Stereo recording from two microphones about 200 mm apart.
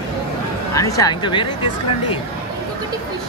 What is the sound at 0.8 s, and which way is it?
Speech, 15° left (ahead or behind).